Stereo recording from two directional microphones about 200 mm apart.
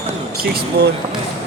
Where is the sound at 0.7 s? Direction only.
55° right (ahead or behind).